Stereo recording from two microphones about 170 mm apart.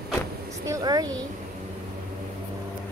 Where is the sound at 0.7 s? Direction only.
20° right (ahead or behind).